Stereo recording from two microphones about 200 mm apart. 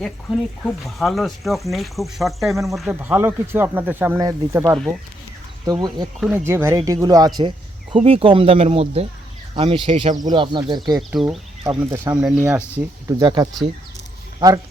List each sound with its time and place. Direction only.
0.0 s speech: centre (ahead or behind); by 6.1 s 20° right (ahead or behind)
6.1 s speech: centre (ahead or behind)
6.4 s speech: 15° right (ahead or behind)
11.1 s speech: centre (ahead or behind)
11.6 s speech: 20° right (ahead or behind)
12.1 s speech: 5° right (ahead or behind)